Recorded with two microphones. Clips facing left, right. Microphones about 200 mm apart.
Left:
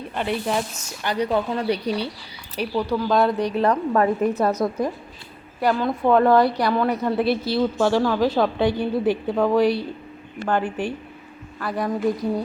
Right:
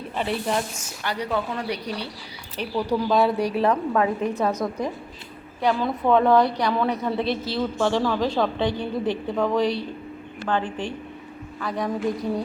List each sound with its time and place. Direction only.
0.2 s a woman's voice: centre (ahead or behind)
1.0 s speech: 20° left (ahead or behind)
2.6 s a woman's voice: 10° left (ahead or behind)
3.1 s a woman's voice: 5° right (ahead or behind)
5.5 s a woman's voice: centre (ahead or behind)